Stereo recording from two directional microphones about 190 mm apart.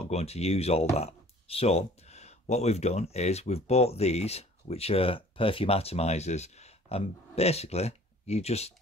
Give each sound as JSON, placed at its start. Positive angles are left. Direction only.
{"t": 0.0, "sound": "speech", "side_deg": 35}